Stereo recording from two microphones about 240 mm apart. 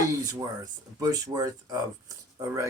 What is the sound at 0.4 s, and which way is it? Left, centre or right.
Speech, centre.